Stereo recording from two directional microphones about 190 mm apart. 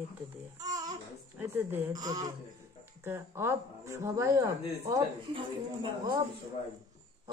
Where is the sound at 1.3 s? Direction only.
10° right (ahead or behind).